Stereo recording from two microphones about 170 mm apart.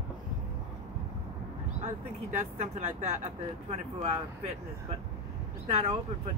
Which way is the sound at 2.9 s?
40° right (ahead or behind).